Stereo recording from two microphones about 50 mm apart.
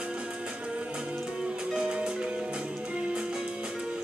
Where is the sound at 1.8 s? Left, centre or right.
Centre.